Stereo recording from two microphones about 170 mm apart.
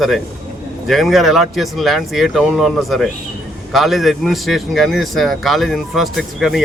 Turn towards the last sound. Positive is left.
turn(degrees=0)  # may be behind; listen again after turning